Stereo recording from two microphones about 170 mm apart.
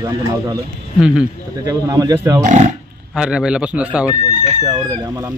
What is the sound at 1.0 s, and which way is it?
Speech, 5° right (ahead or behind).